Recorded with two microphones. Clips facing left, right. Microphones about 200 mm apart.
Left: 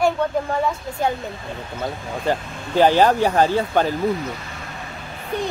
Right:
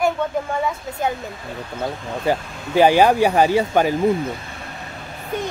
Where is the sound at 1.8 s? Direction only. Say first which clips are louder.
Right 2 dB; 10° right (ahead or behind).